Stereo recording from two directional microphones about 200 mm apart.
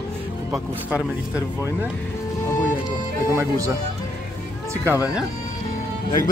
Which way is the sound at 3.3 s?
15° right (ahead or behind).